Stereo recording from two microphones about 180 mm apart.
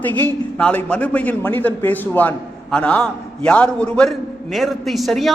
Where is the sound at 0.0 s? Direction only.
10° left (ahead or behind).